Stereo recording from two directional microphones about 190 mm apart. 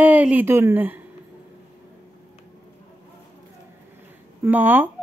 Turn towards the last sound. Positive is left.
turn(degrees=-10)  # may be behind; listen again after turning